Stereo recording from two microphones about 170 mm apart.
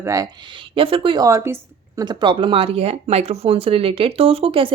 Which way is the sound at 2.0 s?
30° right (ahead or behind).